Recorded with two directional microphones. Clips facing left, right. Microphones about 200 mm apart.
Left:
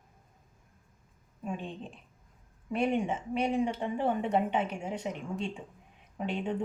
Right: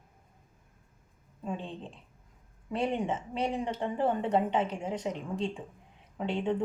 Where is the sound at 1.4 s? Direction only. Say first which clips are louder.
Even; 15° left (ahead or behind).